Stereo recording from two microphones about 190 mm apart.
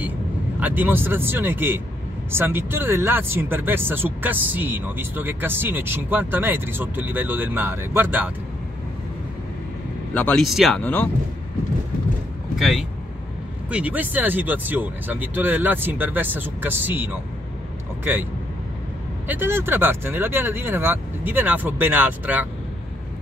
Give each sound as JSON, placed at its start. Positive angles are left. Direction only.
{"t": 0.6, "sound": "speech", "side_deg": -10}
{"t": 10.1, "sound": "speech", "side_deg": 5}
{"t": 12.5, "sound": "speech", "side_deg": 0}
{"t": 19.2, "sound": "speech", "side_deg": -10}